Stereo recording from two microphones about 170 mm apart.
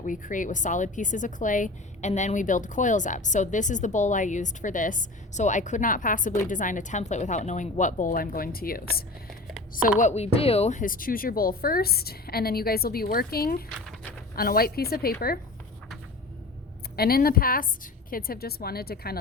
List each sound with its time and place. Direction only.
0.0 s a woman's voice: 50° left (ahead or behind)
10.0 s speech: 40° left (ahead or behind); by 15.1 s 65° left (ahead or behind)
17.0 s speech: 60° left (ahead or behind)